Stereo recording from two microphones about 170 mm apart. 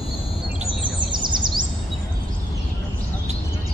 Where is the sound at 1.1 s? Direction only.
25° right (ahead or behind).